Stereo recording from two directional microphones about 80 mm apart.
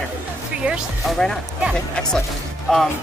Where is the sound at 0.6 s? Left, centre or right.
Right.